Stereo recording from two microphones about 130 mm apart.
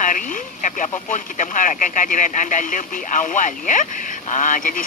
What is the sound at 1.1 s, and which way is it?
Speech, 80° left.